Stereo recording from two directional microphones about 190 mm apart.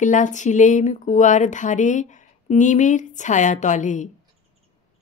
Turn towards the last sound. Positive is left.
turn(degrees=40)  # may be behind; listen again after turning